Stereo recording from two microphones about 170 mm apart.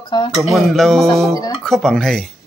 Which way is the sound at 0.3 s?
Centre (ahead or behind).